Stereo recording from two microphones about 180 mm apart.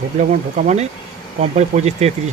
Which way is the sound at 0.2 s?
40° right (ahead or behind).